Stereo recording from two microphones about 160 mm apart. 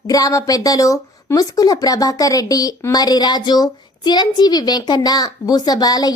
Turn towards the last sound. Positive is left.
turn(degrees=25)  # may be behind; listen again after turning